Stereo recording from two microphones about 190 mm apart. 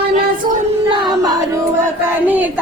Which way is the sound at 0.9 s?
20° right (ahead or behind).